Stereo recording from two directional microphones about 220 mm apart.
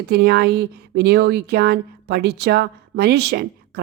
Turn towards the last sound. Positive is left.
turn(degrees=-45)  # may be behind; listen again after turning